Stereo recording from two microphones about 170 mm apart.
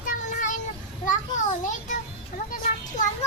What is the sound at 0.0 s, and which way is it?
Child singing, 50° left (ahead or behind).